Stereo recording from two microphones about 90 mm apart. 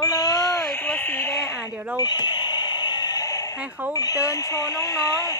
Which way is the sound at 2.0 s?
50° left (ahead or behind).